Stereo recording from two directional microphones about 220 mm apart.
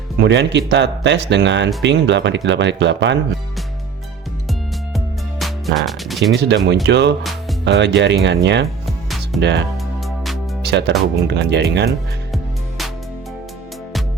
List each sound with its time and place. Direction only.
0.2 s speech: 50° right (ahead or behind)
4.9 s music: centre (ahead or behind)
6.3 s speech: 50° right (ahead or behind)
9.0 s music: centre (ahead or behind)
9.4 s speech: 50° right (ahead or behind)